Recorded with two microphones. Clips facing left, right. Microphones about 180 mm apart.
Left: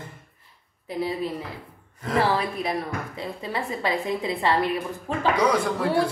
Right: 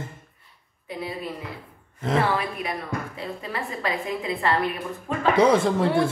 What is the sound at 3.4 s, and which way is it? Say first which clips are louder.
Speech: left 3 dB; 25° left (ahead or behind).